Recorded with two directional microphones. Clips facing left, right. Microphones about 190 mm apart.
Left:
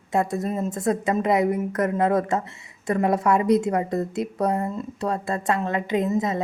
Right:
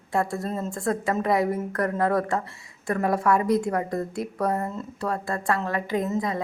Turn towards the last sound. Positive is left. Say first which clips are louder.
# left 3 dB
turn(degrees=20)  # may be behind; listen again after turning